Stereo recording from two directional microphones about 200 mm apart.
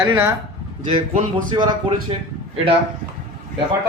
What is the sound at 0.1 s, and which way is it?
Speech, 10° right (ahead or behind).